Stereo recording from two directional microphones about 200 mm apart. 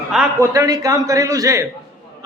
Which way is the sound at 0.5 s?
15° right (ahead or behind).